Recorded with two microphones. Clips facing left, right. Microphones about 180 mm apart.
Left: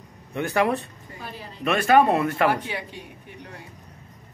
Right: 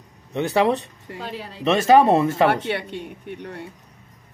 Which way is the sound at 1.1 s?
80° right.